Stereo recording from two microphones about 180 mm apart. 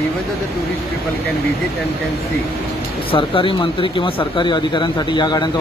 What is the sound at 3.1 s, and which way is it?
Speech, 30° left (ahead or behind).